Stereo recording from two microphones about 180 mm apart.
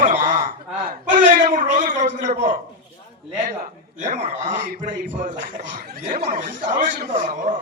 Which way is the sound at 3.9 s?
40° right (ahead or behind).